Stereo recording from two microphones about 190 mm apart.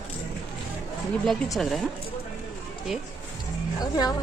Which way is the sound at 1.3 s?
Centre (ahead or behind).